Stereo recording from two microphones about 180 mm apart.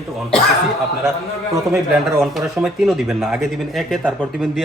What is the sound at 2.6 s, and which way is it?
Speech, centre (ahead or behind).